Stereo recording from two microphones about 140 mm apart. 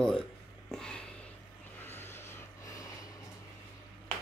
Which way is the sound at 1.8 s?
15° left (ahead or behind).